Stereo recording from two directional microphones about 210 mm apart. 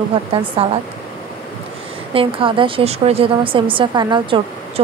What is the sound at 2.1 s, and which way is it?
Speech, 25° right (ahead or behind).